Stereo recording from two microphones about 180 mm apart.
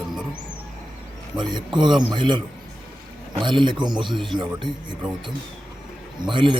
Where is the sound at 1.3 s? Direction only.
25° right (ahead or behind).